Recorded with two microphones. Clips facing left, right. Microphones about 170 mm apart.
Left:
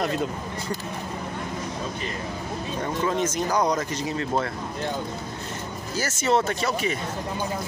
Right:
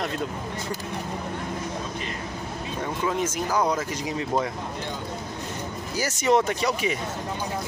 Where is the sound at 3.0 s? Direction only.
5° right (ahead or behind).